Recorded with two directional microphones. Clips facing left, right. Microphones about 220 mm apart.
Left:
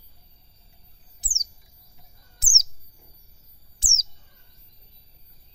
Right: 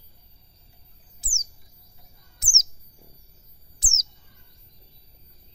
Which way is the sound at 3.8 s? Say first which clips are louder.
Even; 30° left (ahead or behind).